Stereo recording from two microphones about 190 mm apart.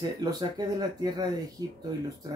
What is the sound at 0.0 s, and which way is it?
Speech, 20° right (ahead or behind).